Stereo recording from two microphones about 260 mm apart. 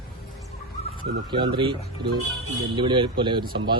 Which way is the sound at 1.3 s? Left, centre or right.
Centre.